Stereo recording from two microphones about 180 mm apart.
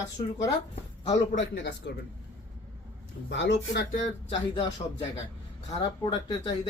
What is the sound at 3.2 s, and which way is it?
Speech, 75° left (ahead or behind).